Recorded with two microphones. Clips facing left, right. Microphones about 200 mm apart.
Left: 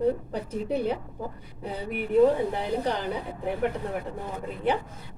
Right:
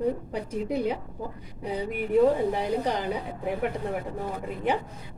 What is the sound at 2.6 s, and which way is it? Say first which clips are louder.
Speech: right 1 dB; 15° right (ahead or behind).